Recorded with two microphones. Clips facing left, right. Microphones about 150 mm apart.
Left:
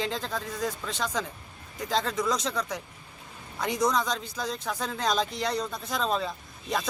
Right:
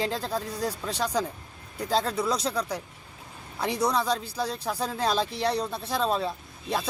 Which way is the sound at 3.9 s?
35° right (ahead or behind).